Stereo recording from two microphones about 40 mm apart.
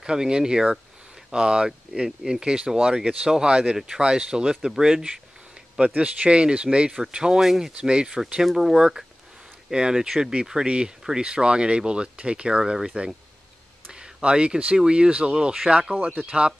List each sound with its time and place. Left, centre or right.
0.0 s speech: centre
2.0 s speech: centre
2.4 s speech: centre
5.9 s speech: right; by 7.9 s centre
7.9 s speech: right
16.2 s speech: right